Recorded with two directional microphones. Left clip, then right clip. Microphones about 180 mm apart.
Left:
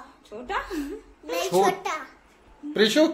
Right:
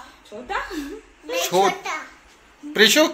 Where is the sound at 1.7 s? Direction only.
65° left (ahead or behind).